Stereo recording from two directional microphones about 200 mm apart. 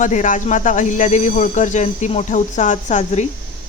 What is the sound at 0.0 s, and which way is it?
Speech, 40° left (ahead or behind).